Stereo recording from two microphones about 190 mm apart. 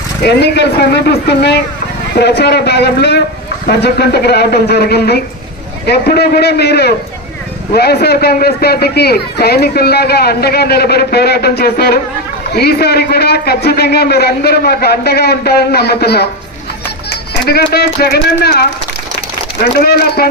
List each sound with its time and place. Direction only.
0.2 s a man's voice: 60° left (ahead or behind)